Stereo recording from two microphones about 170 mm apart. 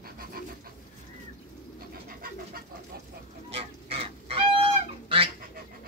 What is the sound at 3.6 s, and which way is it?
Goose, 35° right (ahead or behind).